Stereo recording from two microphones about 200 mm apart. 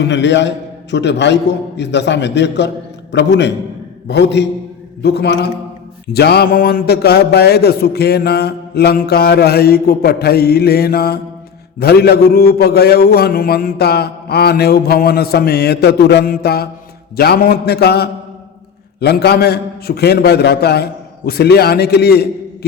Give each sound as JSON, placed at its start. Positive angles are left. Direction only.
{"t": 0.0, "sound": "a man's voice", "side_deg": 60}